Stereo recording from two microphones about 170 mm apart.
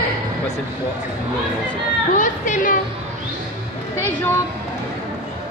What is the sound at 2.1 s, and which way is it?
Speech, 50° left (ahead or behind).